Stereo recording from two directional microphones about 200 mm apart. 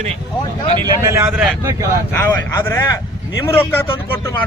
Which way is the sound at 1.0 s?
10° right (ahead or behind).